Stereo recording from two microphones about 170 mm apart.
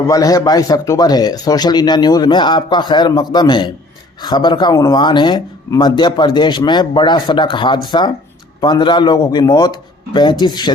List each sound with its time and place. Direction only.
0.1 s speech: 20° left (ahead or behind)